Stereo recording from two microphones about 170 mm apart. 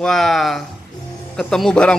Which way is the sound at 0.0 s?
5° left (ahead or behind).